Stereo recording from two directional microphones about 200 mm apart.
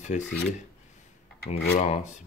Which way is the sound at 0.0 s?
35° left (ahead or behind).